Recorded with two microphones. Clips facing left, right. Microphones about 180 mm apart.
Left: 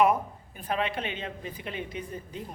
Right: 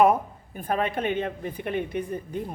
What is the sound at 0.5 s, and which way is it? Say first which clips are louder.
Speech: right 4 dB; 50° right (ahead or behind).